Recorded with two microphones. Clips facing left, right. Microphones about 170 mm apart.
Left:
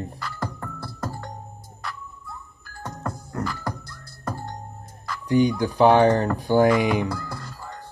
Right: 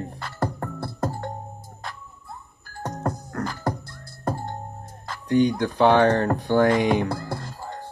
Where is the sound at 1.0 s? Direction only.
25° right (ahead or behind).